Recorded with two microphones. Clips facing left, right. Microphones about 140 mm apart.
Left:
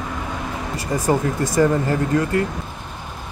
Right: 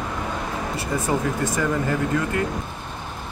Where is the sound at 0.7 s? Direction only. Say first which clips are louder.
Left 5 dB; 40° left (ahead or behind).